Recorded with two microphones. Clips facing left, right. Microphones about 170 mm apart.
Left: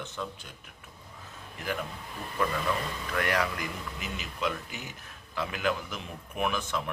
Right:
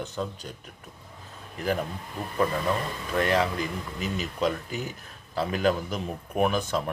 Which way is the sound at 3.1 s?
25° right (ahead or behind).